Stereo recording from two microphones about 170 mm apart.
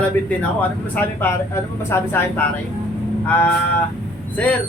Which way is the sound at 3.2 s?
10° left (ahead or behind).